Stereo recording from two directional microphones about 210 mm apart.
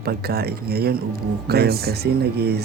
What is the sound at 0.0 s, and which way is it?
Speech, 50° right (ahead or behind).